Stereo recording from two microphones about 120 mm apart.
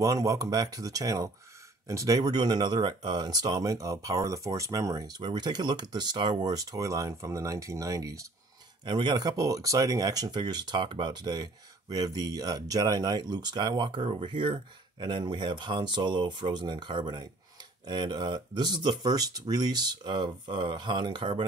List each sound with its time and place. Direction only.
0.0 s speech: 30° right (ahead or behind)
8.8 s speech: 40° right (ahead or behind)